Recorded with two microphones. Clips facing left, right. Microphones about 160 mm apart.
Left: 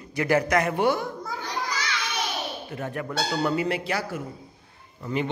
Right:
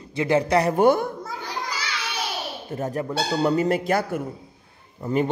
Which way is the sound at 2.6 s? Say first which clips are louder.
Right 4 dB; 35° right (ahead or behind).